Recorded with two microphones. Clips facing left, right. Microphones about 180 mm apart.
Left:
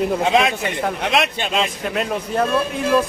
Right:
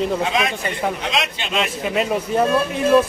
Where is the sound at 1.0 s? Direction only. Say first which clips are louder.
Left 4 dB; 60° left (ahead or behind).